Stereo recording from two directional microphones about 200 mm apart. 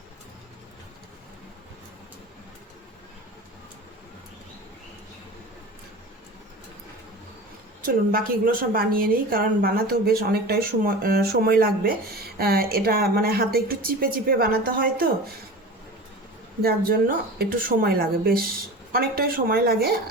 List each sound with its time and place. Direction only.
7.9 s a woman's voice: 45° right (ahead or behind)
16.6 s a woman's voice: 50° right (ahead or behind)